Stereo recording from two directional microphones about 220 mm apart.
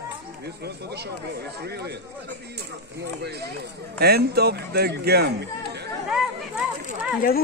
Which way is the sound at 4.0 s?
45° right (ahead or behind).